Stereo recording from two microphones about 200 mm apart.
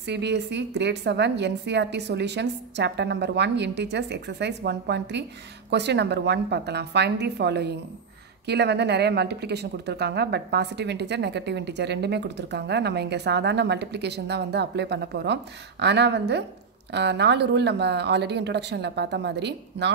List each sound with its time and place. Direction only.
0.0 s a woman's voice: 60° right (ahead or behind)